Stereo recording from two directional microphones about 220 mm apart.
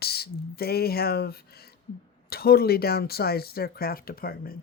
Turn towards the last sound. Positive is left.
turn(degrees=40)  # may be behind; listen again after turning